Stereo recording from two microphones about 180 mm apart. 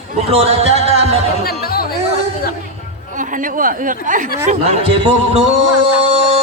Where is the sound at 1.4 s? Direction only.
60° left (ahead or behind).